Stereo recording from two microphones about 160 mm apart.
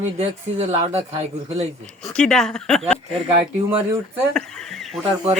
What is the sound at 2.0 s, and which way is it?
Speech, 5° left (ahead or behind).